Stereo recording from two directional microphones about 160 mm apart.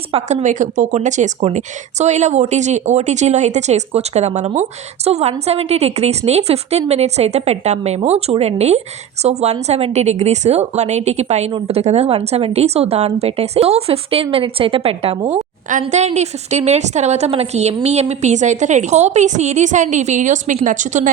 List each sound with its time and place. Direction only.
0.1 s a woman's voice: 40° right (ahead or behind)
15.8 s a woman's voice: 45° right (ahead or behind)